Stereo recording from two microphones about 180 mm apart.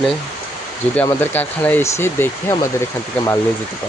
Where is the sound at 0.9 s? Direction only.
10° left (ahead or behind).